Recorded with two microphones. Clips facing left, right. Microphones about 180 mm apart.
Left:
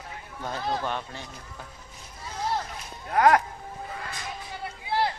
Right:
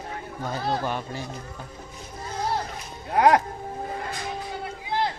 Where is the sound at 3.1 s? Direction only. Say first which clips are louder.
Right 1 dB; 20° right (ahead or behind).